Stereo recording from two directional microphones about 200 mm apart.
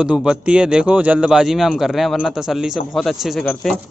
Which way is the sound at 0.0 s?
5° right (ahead or behind).